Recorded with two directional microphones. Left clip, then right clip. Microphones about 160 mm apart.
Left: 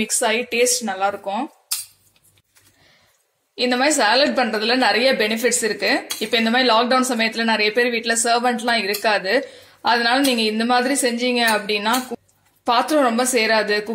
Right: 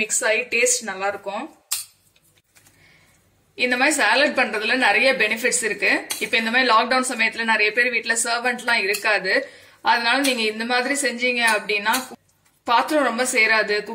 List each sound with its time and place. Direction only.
0.0 s a woman's voice: 50° left (ahead or behind)
3.5 s a woman's voice: 40° left (ahead or behind)